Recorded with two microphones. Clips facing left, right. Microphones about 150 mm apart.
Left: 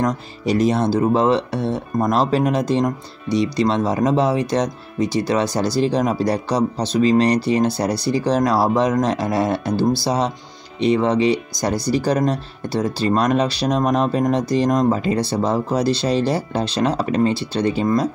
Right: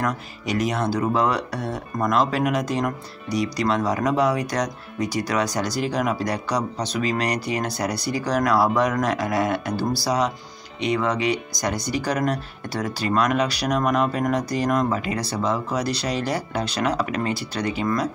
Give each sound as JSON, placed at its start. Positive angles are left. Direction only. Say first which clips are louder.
{"t": 0.0, "sound": "speech", "louder": "left 5 dB", "side_deg": 30}